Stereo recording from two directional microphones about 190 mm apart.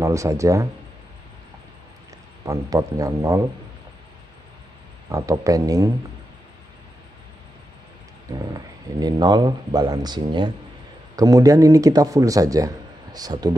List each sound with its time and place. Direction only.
0.0 s a man's voice: 15° right (ahead or behind)
2.4 s a man's voice: 15° right (ahead or behind)
5.1 s a man's voice: 15° right (ahead or behind)
8.3 s a man's voice: 20° right (ahead or behind)